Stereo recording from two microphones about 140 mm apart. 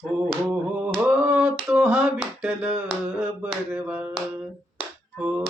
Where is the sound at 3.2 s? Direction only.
10° right (ahead or behind).